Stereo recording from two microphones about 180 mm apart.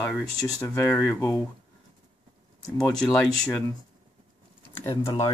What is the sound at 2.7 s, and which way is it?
Speech, 5° left (ahead or behind).